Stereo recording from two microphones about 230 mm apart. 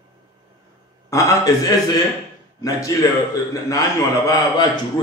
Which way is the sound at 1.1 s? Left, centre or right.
Centre.